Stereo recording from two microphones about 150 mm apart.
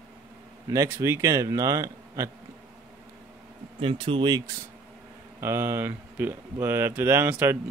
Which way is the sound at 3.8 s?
35° right (ahead or behind).